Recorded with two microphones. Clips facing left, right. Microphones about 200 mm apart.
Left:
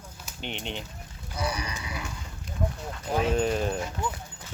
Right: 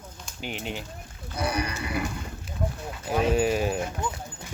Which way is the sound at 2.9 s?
10° right (ahead or behind).